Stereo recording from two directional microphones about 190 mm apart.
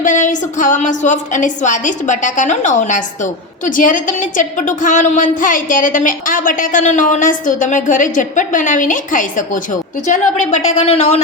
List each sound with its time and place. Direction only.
0.0 s a woman's voice: 40° left (ahead or behind)